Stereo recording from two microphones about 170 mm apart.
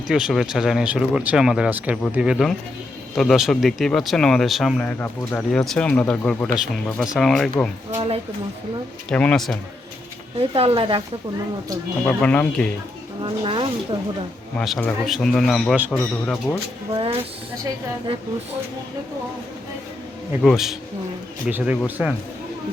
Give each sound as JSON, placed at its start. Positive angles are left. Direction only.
{"t": 0.1, "sound": "speech", "side_deg": -5}
{"t": 7.9, "sound": "speech", "side_deg": -40}
{"t": 9.0, "sound": "speech", "side_deg": 5}
{"t": 10.5, "sound": "speech", "side_deg": -35}
{"t": 12.0, "sound": "speech", "side_deg": 10}
{"t": 13.2, "sound": "speech", "side_deg": -30}
{"t": 14.6, "sound": "speech", "side_deg": 0}
{"t": 16.9, "sound": "speech", "side_deg": -30}
{"t": 20.4, "sound": "speech", "side_deg": 0}